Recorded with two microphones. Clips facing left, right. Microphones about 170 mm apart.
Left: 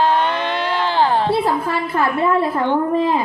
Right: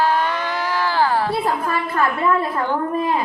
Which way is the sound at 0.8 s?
20° left (ahead or behind).